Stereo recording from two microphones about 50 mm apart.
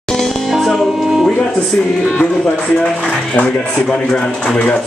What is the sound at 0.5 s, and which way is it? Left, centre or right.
Music, centre.